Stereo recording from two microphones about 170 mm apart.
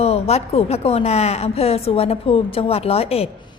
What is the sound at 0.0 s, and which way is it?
A woman's voice, 35° left (ahead or behind).